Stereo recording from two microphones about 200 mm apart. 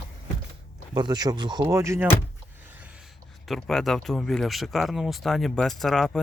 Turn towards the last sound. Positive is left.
turn(degrees=0)  # may be behind; listen again after turning